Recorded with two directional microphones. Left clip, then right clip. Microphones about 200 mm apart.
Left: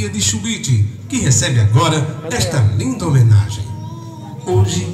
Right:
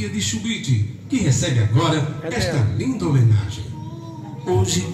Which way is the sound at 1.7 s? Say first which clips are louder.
Left 4 dB; 25° left (ahead or behind).